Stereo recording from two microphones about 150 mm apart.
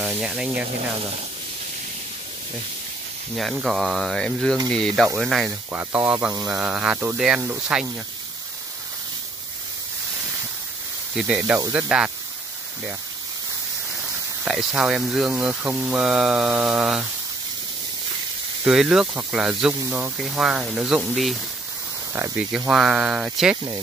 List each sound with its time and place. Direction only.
0.0 s speech: 5° right (ahead or behind)
3.3 s speech: centre (ahead or behind)
5.7 s speech: 15° right (ahead or behind)
11.1 s speech: 10° right (ahead or behind)
14.4 s speech: 5° right (ahead or behind)
18.7 s speech: 5° right (ahead or behind)
22.1 s speech: 15° right (ahead or behind)